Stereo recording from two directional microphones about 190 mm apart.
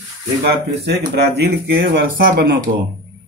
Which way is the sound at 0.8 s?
60° right (ahead or behind).